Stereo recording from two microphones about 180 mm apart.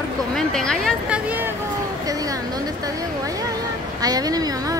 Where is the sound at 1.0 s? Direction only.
5° right (ahead or behind).